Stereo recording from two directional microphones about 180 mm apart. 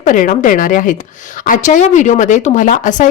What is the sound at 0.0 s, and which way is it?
A woman's voice, 45° left (ahead or behind).